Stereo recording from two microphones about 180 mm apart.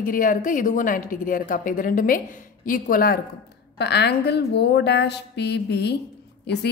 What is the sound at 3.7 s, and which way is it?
A woman's voice, 70° left (ahead or behind).